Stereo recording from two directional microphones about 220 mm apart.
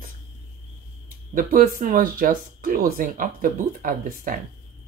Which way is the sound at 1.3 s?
40° right (ahead or behind).